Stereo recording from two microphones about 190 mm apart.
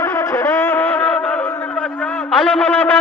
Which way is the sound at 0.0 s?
10° left (ahead or behind).